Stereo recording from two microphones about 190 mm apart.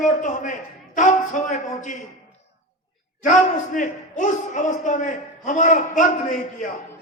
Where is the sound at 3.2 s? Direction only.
40° left (ahead or behind).